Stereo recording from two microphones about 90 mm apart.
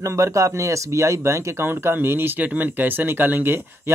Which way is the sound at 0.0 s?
35° right (ahead or behind).